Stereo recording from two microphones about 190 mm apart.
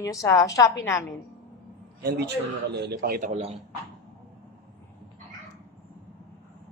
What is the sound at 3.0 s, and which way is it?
Speech, 50° right (ahead or behind).